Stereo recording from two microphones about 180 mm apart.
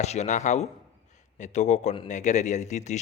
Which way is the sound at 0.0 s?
40° left (ahead or behind).